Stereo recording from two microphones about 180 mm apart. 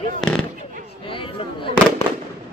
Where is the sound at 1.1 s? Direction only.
30° left (ahead or behind).